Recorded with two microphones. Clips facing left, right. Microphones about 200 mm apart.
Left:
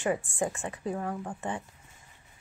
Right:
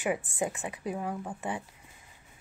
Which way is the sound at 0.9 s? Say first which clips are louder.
Left 1 dB; 5° right (ahead or behind).